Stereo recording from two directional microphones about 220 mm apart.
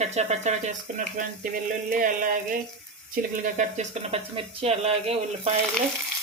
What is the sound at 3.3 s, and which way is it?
Speech, 35° right (ahead or behind).